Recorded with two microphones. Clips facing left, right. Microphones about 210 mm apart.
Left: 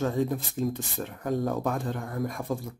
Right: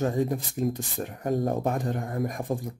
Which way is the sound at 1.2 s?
30° right (ahead or behind).